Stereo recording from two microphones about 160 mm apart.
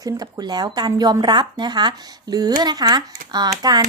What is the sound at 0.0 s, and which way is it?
Speech, 25° right (ahead or behind).